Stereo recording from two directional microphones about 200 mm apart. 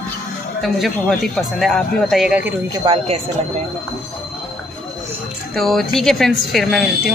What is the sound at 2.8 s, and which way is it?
Speech, 30° right (ahead or behind).